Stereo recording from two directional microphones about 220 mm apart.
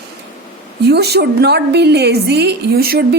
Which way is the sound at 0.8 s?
50° right (ahead or behind).